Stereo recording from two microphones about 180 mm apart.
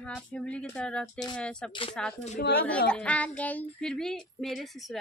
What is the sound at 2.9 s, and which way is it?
Speech, 5° left (ahead or behind).